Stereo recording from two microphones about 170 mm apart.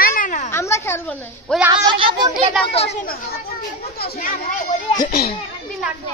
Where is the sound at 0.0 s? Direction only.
55° left (ahead or behind).